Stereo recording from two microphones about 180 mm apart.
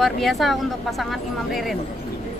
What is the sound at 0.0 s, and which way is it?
Speech, centre (ahead or behind).